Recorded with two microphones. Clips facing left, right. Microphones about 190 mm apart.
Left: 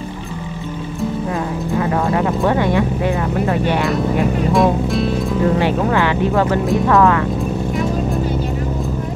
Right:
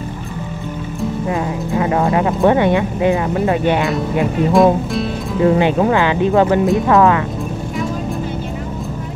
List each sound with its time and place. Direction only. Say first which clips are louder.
2.4 s speech: right 5 dB; 20° right (ahead or behind)
4.5 s speech: right 5 dB; centre (ahead or behind)
5.6 s speech: right 2 dB; 20° right (ahead or behind)